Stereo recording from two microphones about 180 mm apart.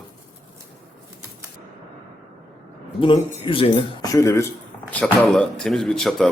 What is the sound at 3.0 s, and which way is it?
Speech, 30° left (ahead or behind).